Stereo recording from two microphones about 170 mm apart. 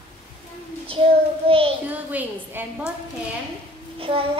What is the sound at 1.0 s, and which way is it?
Child singing, 30° right (ahead or behind).